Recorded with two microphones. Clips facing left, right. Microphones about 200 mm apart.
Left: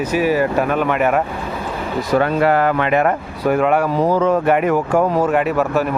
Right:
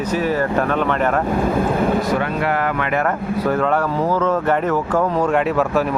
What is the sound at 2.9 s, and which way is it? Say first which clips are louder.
Speech: left 3 dB; 20° left (ahead or behind).